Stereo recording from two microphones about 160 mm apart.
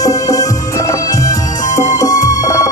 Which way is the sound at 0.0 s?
20° left (ahead or behind).